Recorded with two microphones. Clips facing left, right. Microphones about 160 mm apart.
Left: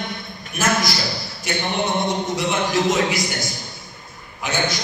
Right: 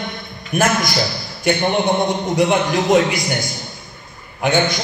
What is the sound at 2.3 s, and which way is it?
Speech, 55° right (ahead or behind).